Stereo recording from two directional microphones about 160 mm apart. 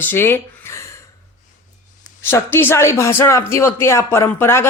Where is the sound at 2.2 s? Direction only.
15° left (ahead or behind).